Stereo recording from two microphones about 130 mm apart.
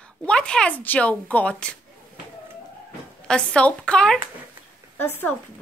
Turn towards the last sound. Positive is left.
turn(degrees=15)  # may be behind; listen again after turning